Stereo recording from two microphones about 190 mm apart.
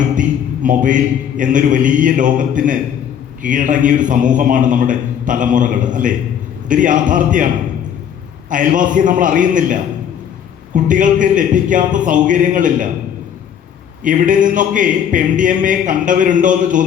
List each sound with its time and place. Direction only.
0.2 s a man's voice: 45° right (ahead or behind)
8.4 s a man's voice: 45° right (ahead or behind)
10.8 s a man's voice: 45° right (ahead or behind)
14.0 s a man's voice: 45° right (ahead or behind)